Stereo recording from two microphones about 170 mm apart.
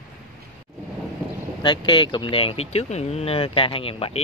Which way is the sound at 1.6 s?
30° left (ahead or behind).